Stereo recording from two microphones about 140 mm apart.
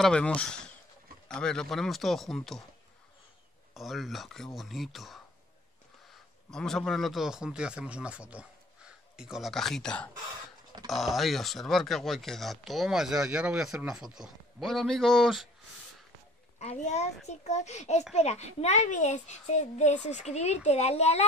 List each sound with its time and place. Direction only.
0.0 s speech: 5° left (ahead or behind)
3.7 s speech: centre (ahead or behind)
6.5 s speech: 5° left (ahead or behind)
16.5 s a child's voice: 55° left (ahead or behind)